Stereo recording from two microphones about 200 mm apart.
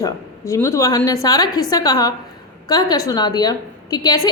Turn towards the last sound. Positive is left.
turn(degrees=20)  # may be behind; listen again after turning